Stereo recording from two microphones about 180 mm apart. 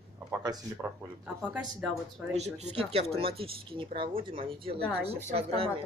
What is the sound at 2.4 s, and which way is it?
Speech, 35° right (ahead or behind).